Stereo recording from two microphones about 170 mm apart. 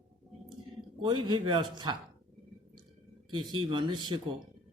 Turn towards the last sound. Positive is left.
turn(degrees=-25)  # may be behind; listen again after turning